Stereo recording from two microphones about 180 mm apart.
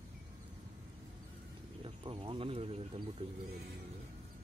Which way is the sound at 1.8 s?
30° right (ahead or behind).